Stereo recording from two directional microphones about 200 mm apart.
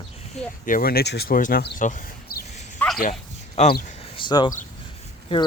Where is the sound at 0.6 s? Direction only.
45° left (ahead or behind).